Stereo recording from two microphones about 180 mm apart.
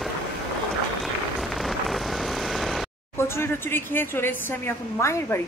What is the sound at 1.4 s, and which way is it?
Vehicle, centre (ahead or behind).